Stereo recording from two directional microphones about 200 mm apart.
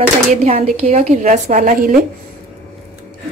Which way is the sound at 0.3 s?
35° right (ahead or behind).